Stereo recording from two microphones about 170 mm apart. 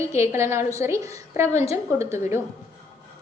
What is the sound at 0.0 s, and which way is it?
A woman's voice, 15° right (ahead or behind).